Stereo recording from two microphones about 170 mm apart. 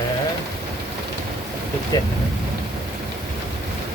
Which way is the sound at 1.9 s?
25° left (ahead or behind).